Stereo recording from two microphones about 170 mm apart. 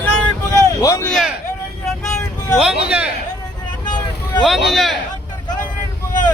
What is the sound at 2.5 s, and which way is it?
Speech, 5° right (ahead or behind).